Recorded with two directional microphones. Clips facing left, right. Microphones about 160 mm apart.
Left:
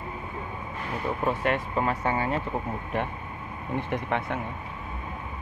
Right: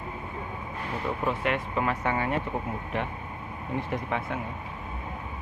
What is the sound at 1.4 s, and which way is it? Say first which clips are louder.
Speech: left 2 dB; 40° left (ahead or behind).